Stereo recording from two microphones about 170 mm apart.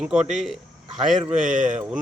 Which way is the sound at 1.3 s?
50° right (ahead or behind).